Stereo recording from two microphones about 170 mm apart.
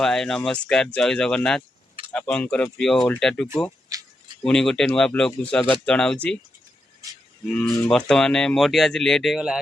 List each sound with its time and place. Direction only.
0.0 s speech: 5° left (ahead or behind)
3.9 s a sound: 20° right (ahead or behind)
4.4 s speech: 5° left (ahead or behind)
7.6 s speech: 5° left (ahead or behind)